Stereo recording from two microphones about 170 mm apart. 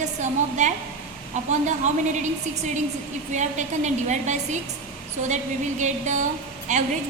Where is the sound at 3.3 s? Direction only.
45° right (ahead or behind).